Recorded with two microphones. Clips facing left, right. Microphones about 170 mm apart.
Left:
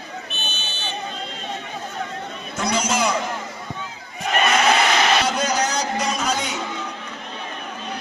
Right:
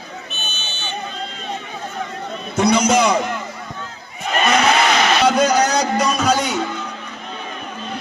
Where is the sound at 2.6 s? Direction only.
70° right (ahead or behind).